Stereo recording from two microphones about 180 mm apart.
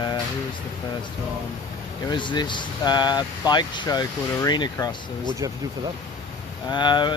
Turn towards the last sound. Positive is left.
turn(degrees=25)  # may be behind; listen again after turning